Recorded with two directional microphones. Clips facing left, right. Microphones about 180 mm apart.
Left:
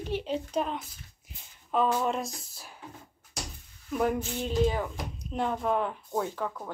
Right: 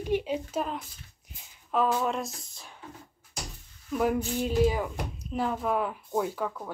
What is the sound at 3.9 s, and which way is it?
Speech, 5° right (ahead or behind).